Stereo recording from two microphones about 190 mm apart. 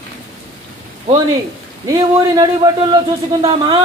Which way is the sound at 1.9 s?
20° right (ahead or behind).